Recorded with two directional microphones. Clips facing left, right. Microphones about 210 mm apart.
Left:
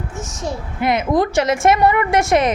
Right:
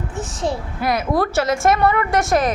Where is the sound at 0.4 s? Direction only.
70° right (ahead or behind).